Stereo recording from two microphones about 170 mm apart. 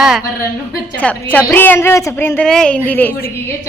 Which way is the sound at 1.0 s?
10° left (ahead or behind).